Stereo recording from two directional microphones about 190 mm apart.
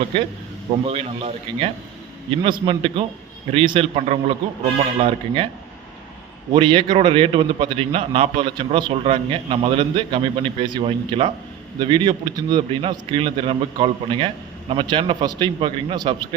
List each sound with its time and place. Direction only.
0.9 s a man's voice: 30° right (ahead or behind)
6.5 s a man's voice: 25° right (ahead or behind)